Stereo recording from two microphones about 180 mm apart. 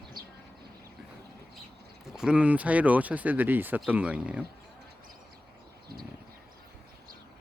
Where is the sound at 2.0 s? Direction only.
5° right (ahead or behind).